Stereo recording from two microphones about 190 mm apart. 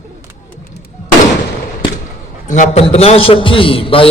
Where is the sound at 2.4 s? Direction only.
40° left (ahead or behind).